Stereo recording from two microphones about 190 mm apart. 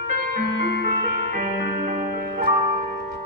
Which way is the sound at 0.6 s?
65° left (ahead or behind).